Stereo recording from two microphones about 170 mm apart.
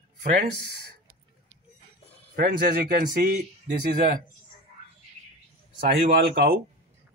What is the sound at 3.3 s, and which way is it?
Speech, 45° right (ahead or behind).